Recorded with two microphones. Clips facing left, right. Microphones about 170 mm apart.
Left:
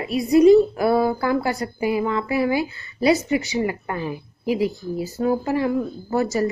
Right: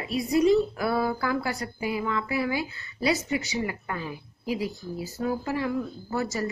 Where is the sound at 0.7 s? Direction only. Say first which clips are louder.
Left 7 dB; 35° left (ahead or behind).